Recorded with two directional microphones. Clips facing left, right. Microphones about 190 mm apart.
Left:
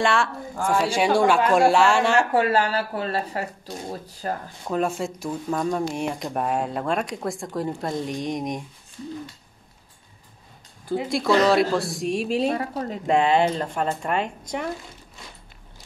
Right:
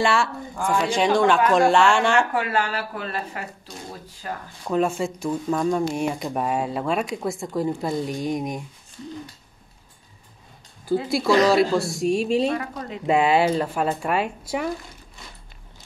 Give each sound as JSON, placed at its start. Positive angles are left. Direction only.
{"t": 0.0, "sound": "speech", "side_deg": 0}
{"t": 2.3, "sound": "speech", "side_deg": 35}
{"t": 4.6, "sound": "speech", "side_deg": 0}
{"t": 11.1, "sound": "speech", "side_deg": -5}
{"t": 12.4, "sound": "speech", "side_deg": 35}
{"t": 13.0, "sound": "speech", "side_deg": -5}